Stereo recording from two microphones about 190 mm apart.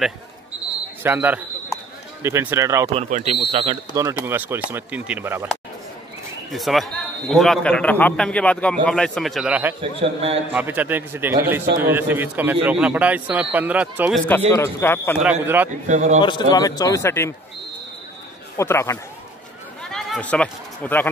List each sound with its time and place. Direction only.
1.0 s a man's voice: 10° right (ahead or behind)
2.9 s speech: 35° right (ahead or behind)
3.9 s a man's voice: 15° right (ahead or behind)
6.5 s speech: centre (ahead or behind)
9.8 s a man's voice: 30° right (ahead or behind)
10.5 s a man's voice: 10° right (ahead or behind)
14.5 s a man's voice: 15° left (ahead or behind)
15.4 s a man's voice: 10° right (ahead or behind)
15.9 s speech: 35° right (ahead or behind)
16.2 s speech: 25° left (ahead or behind)
18.6 s a man's voice: 15° left (ahead or behind)
19.8 s a sound: 5° left (ahead or behind)